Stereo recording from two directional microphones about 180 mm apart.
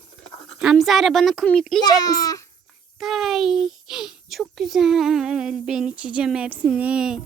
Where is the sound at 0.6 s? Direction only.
Centre (ahead or behind).